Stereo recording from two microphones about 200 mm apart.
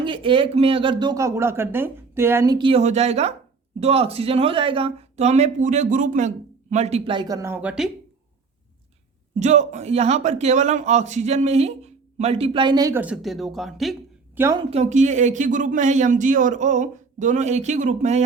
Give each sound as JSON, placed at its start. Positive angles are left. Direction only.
{"t": 0.0, "sound": "speech", "side_deg": -25}
{"t": 9.4, "sound": "a man's voice", "side_deg": -35}
{"t": 14.3, "sound": "speech", "side_deg": -15}
{"t": 14.7, "sound": "a man's voice", "side_deg": -35}